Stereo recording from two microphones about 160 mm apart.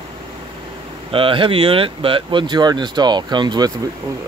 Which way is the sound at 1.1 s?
35° right (ahead or behind).